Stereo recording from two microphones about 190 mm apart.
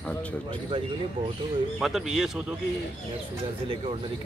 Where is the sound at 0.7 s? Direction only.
25° right (ahead or behind).